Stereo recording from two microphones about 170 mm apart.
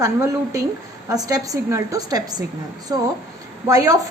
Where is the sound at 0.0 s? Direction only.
20° right (ahead or behind).